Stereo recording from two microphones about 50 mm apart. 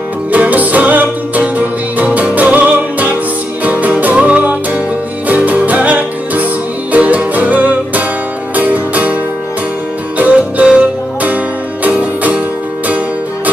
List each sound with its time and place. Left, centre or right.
0.3 s music: right
10.1 s music: right
12.0 s music: right